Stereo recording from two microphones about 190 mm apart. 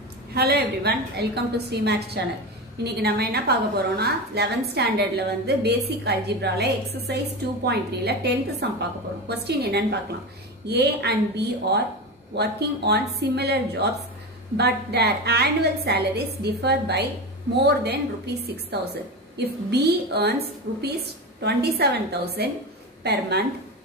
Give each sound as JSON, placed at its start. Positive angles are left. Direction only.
{"t": 0.3, "sound": "a woman's voice", "side_deg": -55}